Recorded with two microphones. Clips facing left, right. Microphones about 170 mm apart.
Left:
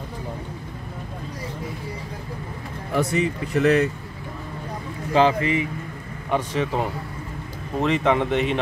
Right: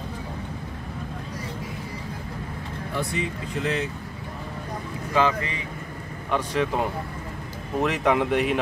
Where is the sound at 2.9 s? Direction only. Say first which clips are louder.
Left 7 dB; 75° left (ahead or behind).